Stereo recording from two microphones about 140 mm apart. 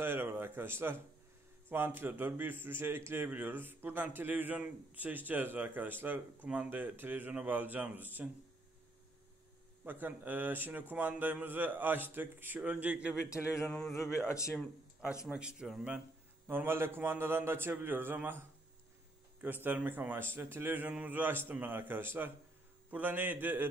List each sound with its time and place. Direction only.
0.0 s a man's voice: 15° right (ahead or behind)
9.8 s a man's voice: 15° right (ahead or behind)
13.6 s speech: centre (ahead or behind)
13.9 s speech: 20° left (ahead or behind)
15.2 s a man's voice: 5° right (ahead or behind)
16.4 s a man's voice: 15° right (ahead or behind)
19.6 s a man's voice: 15° right (ahead or behind)